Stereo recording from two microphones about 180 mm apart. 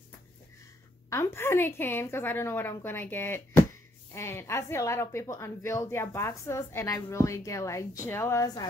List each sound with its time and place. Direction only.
1.1 s speech: 15° left (ahead or behind)